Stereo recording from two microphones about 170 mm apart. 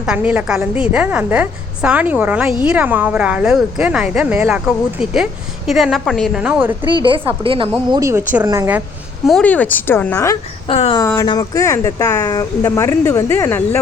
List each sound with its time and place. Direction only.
0.0 s a woman's voice: 5° right (ahead or behind)
6.8 s a woman's voice: 30° right (ahead or behind)
7.9 s a woman's voice: 20° right (ahead or behind)
9.2 s speech: 5° left (ahead or behind)
10.7 s speech: 30° left (ahead or behind)
11.2 s speech: 20° left (ahead or behind)